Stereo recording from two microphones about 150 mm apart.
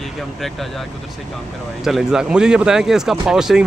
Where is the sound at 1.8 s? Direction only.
5° right (ahead or behind).